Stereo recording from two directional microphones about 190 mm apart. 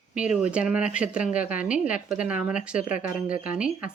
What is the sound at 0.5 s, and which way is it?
Speech, 5° right (ahead or behind).